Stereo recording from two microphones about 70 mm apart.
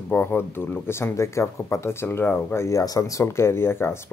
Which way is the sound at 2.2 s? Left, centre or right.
Left.